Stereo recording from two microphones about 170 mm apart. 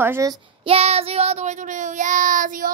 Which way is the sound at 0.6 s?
35° right (ahead or behind).